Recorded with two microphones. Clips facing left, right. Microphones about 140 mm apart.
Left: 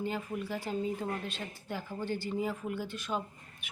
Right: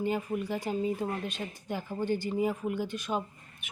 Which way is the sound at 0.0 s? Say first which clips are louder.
Right 5 dB; 15° right (ahead or behind).